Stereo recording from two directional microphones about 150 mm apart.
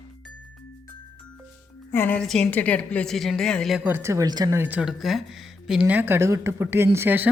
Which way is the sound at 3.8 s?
15° right (ahead or behind).